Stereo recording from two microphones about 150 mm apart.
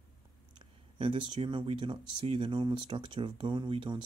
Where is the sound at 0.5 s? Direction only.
35° right (ahead or behind).